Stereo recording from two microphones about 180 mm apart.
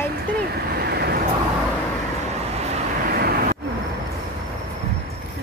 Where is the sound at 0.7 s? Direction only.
65° right (ahead or behind).